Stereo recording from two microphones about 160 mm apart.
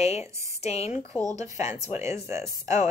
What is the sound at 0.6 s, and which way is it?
Speech, 40° left (ahead or behind).